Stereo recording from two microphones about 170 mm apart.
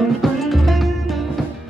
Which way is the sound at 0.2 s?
Centre (ahead or behind).